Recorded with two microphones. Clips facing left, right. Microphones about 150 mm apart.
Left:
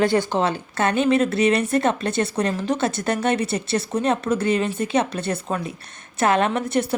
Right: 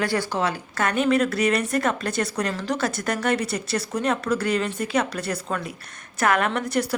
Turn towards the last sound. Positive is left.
turn(degrees=25)  # may be behind; listen again after turning